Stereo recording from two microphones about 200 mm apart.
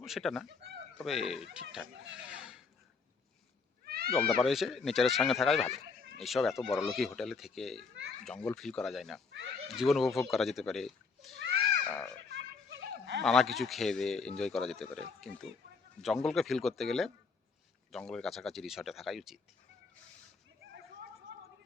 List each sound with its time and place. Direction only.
0.0 s a man's voice: centre (ahead or behind)
0.4 s speech: 55° right (ahead or behind)
1.0 s a man's voice: centre (ahead or behind)
2.2 s filing: 5° right (ahead or behind)
3.8 s cat: 50° right (ahead or behind)
4.2 s a man's voice: centre (ahead or behind)
12.4 s a sound: 65° right (ahead or behind)
13.2 s a man's voice: centre (ahead or behind)